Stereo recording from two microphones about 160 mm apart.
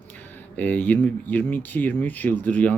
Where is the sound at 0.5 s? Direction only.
10° left (ahead or behind).